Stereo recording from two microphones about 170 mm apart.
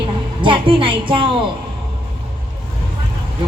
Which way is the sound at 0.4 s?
30° right (ahead or behind).